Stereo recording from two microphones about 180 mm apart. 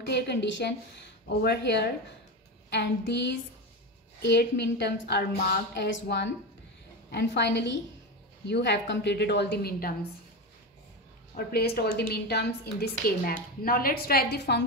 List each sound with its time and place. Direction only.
0.0 s a woman's voice: 70° left (ahead or behind)
1.2 s a woman's voice: 65° left (ahead or behind)
5.8 s a woman's voice: 85° left; by 9.9 s 60° left (ahead or behind)
11.3 s a woman's voice: 60° left (ahead or behind)